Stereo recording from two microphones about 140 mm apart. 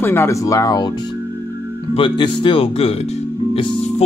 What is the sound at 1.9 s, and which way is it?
Speech, 40° left (ahead or behind).